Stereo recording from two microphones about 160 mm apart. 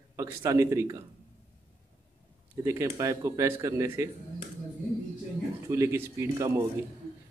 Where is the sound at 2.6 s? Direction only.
20° right (ahead or behind).